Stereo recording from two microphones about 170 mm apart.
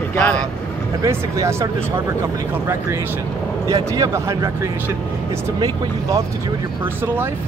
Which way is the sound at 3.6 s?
20° right (ahead or behind).